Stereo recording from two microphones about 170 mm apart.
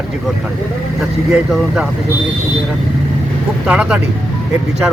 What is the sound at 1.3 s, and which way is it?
Speech, 5° right (ahead or behind).